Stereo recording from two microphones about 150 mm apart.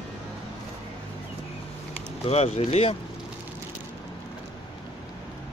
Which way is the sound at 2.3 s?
45° left (ahead or behind).